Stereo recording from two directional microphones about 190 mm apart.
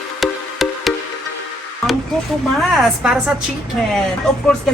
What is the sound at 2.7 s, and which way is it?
Speech, centre (ahead or behind).